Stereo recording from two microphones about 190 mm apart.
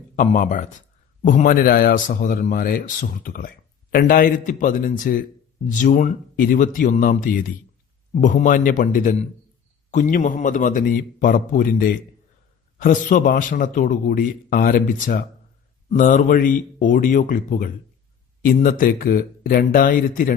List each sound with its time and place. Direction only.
0.2 s a man's voice: 40° left (ahead or behind)